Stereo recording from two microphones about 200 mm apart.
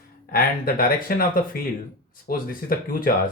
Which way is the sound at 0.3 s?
45° left (ahead or behind).